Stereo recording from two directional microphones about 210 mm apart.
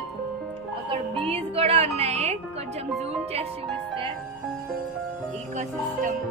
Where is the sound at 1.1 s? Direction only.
25° right (ahead or behind).